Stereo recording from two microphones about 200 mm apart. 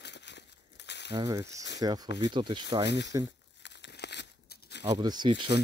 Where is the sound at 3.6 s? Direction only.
60° left (ahead or behind).